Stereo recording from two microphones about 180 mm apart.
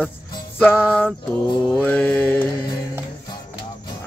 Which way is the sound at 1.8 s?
10° left (ahead or behind).